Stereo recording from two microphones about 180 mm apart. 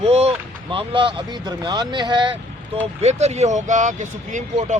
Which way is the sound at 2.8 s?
35° right (ahead or behind).